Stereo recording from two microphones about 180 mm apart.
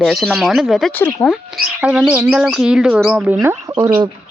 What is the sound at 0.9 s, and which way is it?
Speech, 10° left (ahead or behind).